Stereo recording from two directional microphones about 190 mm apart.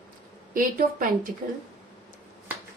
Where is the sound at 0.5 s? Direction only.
45° right (ahead or behind).